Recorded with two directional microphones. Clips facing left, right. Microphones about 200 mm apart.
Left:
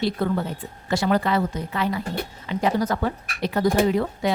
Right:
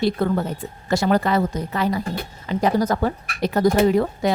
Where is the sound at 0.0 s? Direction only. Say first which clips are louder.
Right 3 dB; 45° right (ahead or behind).